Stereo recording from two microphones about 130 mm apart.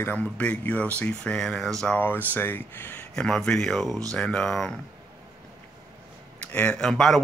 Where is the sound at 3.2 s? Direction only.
5° left (ahead or behind).